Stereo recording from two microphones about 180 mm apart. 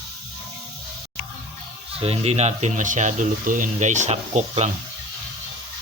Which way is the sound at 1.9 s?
35° right (ahead or behind).